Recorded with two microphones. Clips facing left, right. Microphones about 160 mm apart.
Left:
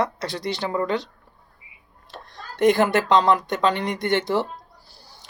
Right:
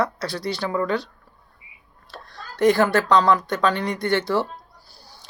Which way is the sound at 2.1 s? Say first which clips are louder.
Even; 20° left (ahead or behind).